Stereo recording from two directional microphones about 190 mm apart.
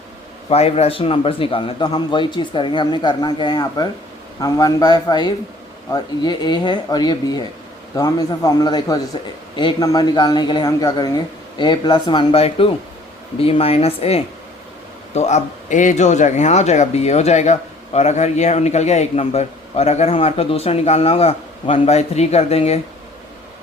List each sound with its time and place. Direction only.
0.5 s a man's voice: 35° left (ahead or behind)